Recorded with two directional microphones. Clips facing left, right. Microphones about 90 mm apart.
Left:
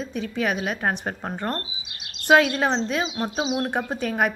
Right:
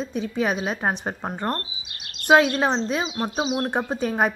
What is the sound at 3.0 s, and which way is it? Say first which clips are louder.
Speech: even; 10° right (ahead or behind).